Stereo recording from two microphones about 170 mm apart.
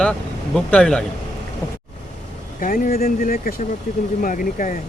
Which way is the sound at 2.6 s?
55° left (ahead or behind).